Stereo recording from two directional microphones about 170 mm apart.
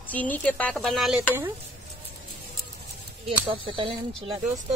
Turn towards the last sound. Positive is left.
turn(degrees=-30)  # may be behind; listen again after turning